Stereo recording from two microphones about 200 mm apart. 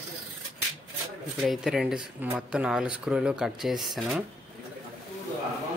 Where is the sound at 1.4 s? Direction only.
Centre (ahead or behind).